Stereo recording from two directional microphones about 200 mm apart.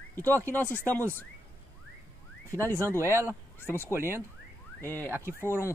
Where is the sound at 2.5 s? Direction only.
15° right (ahead or behind).